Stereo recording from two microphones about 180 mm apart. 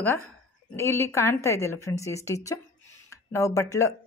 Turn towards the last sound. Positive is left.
turn(degrees=15)  # may be behind; listen again after turning